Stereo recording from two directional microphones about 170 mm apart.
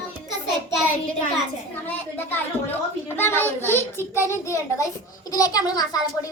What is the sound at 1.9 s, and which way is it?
A child's voice, 10° left (ahead or behind).